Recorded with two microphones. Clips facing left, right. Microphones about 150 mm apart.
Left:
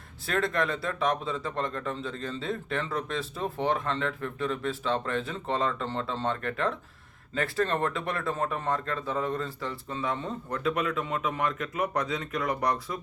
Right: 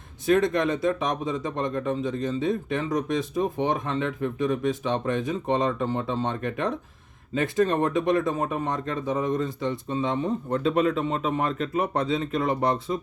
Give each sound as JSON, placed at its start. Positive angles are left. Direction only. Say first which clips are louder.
{"t": 0.3, "sound": "speech", "louder": "right 7 dB", "side_deg": -20}